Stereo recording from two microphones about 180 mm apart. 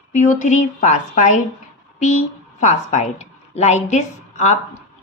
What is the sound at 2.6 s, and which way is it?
A woman's voice, 40° left (ahead or behind).